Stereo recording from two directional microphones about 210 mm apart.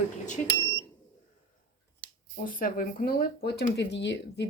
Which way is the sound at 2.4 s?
40° left (ahead or behind).